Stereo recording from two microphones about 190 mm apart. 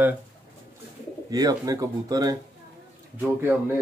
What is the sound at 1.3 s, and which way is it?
Speech, 20° right (ahead or behind).